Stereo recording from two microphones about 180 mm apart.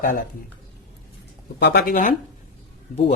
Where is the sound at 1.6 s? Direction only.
60° left (ahead or behind).